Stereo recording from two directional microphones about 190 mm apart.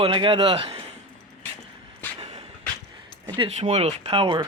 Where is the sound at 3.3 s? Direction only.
30° right (ahead or behind).